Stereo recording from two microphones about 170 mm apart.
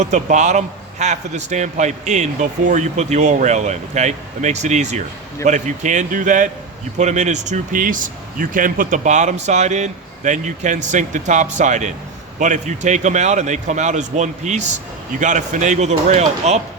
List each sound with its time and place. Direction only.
0.0 s a man's voice: 45° right (ahead or behind)